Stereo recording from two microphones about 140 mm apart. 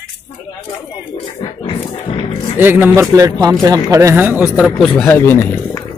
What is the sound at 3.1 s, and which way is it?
Speech, 25° right (ahead or behind).